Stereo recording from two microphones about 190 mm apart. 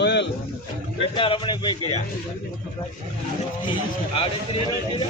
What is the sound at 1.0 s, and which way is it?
A man's voice, 25° left (ahead or behind).